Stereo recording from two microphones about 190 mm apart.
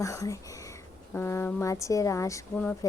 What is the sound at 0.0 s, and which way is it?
A woman's voice, 15° left (ahead or behind).